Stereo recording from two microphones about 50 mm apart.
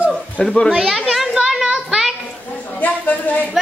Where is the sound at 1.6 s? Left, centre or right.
Centre.